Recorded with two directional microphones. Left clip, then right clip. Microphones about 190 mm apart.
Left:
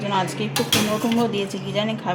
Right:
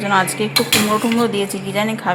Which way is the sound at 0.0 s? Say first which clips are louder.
Right 7 dB; 10° right (ahead or behind).